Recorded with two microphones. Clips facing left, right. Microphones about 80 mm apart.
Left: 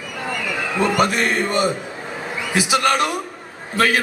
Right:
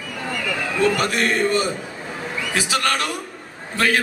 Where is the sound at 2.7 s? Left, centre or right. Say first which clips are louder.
Left 6 dB; left.